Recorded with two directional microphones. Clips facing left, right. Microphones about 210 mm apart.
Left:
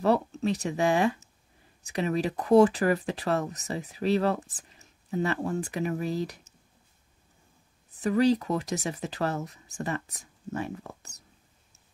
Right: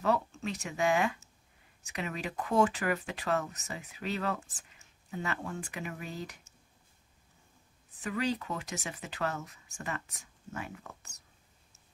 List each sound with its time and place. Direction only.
0.0 s speech: 35° left (ahead or behind)
8.0 s speech: 35° left (ahead or behind)